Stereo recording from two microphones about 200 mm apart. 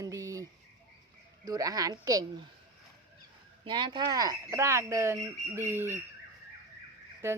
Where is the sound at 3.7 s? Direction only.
20° right (ahead or behind).